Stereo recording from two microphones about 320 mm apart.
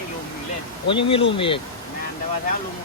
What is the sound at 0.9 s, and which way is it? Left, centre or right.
Speech, centre.